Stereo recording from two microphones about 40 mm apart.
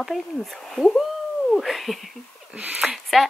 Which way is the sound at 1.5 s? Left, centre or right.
Centre.